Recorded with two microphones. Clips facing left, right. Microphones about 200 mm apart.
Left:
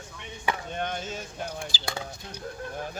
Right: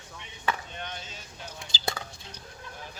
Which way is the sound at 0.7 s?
50° left (ahead or behind).